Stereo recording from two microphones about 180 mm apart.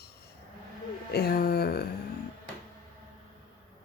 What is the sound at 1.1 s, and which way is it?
Speech, 60° left (ahead or behind).